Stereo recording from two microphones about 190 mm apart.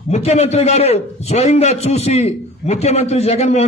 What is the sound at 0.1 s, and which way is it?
A man's voice, 35° left (ahead or behind).